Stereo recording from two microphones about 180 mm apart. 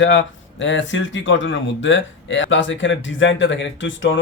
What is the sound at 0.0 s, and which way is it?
Speech, 90° left.